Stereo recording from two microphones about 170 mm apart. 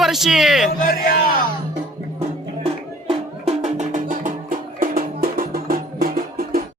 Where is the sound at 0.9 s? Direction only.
60° left (ahead or behind).